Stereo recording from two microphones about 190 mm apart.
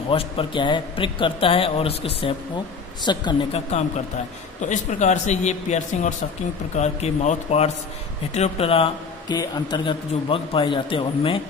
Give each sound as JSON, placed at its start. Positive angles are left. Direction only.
{"t": 0.1, "sound": "a man's voice", "side_deg": 30}
{"t": 4.6, "sound": "a man's voice", "side_deg": 40}